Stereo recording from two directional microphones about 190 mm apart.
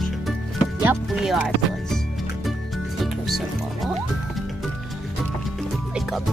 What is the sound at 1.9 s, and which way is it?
Music, centre (ahead or behind).